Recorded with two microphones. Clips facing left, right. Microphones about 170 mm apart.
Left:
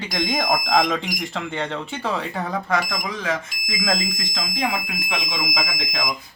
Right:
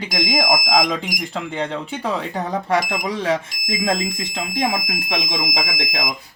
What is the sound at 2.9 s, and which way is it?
Speech, 30° right (ahead or behind).